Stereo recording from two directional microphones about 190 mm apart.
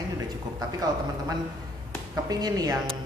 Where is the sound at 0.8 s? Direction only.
20° right (ahead or behind).